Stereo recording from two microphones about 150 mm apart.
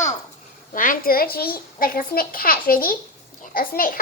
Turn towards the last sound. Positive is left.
turn(degrees=75)  # may be behind; listen again after turning